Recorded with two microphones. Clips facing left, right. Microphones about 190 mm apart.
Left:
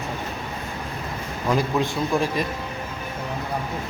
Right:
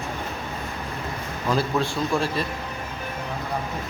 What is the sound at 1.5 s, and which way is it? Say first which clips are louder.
Speech: left 1 dB; 15° left (ahead or behind).